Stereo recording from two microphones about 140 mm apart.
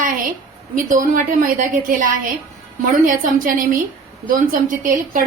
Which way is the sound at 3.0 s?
70° right (ahead or behind).